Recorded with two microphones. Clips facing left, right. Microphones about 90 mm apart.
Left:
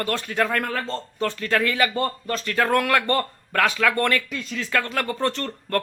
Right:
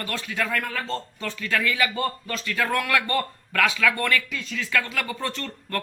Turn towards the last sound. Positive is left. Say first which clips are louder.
# left 5 dB
turn(degrees=40)  # may be behind; listen again after turning